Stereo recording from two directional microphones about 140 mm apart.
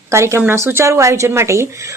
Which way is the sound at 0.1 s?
20° right (ahead or behind).